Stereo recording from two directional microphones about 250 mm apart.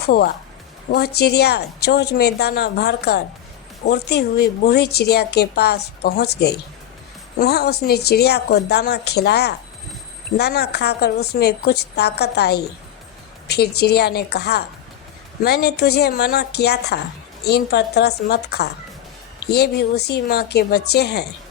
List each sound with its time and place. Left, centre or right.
0.0 s a woman's voice: left
7.3 s a woman's voice: left